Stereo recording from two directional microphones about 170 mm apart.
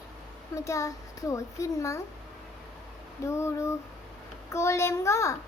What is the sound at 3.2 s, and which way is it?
A child's voice, 15° left (ahead or behind).